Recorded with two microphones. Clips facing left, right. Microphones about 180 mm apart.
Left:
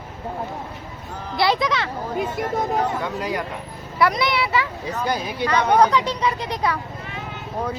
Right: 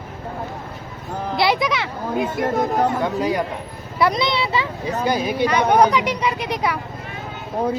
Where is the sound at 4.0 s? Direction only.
20° right (ahead or behind).